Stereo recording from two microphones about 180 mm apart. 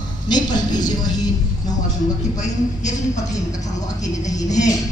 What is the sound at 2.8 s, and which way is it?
Speech, 40° left (ahead or behind).